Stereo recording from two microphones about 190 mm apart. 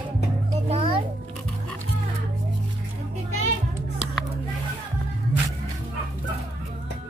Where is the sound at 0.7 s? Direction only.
35° right (ahead or behind).